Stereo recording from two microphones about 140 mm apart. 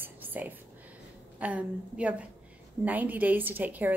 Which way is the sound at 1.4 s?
10° right (ahead or behind).